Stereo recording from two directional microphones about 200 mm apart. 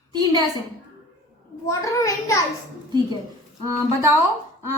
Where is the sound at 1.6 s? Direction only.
15° left (ahead or behind).